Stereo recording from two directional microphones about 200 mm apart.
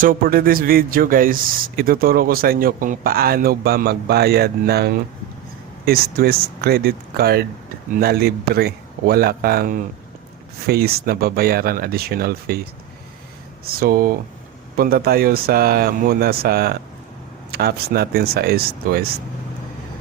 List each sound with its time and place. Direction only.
0.0 s speech: 45° right (ahead or behind)
13.7 s speech: 45° right (ahead or behind)